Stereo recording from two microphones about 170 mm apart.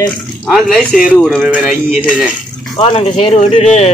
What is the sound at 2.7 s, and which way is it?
Speech, 35° left (ahead or behind).